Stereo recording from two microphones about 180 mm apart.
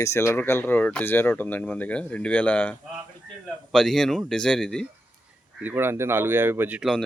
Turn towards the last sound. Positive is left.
turn(degrees=0)  # may be behind; listen again after turning